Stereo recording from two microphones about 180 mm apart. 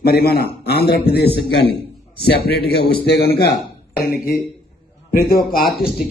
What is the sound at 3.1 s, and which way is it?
Speech, 60° left (ahead or behind).